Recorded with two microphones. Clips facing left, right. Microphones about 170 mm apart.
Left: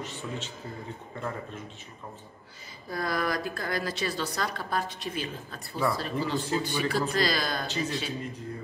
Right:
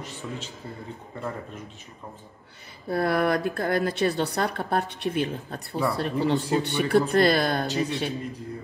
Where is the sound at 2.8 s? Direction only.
65° right (ahead or behind).